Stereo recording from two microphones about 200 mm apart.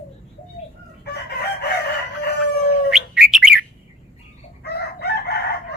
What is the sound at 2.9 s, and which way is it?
Bird, centre (ahead or behind).